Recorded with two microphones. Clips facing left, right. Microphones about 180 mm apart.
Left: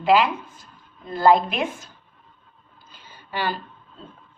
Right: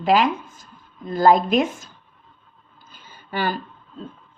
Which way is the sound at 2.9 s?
50° right (ahead or behind).